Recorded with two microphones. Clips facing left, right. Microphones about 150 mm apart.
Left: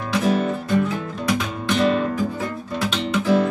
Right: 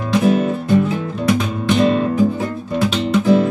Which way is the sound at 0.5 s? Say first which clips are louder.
Right 5 dB; 20° right (ahead or behind).